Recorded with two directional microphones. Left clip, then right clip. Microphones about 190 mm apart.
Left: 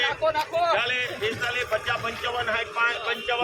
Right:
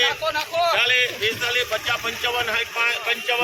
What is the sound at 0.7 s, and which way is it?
A man's voice, centre (ahead or behind).